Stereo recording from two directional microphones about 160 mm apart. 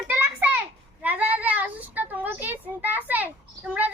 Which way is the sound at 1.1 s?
10° right (ahead or behind).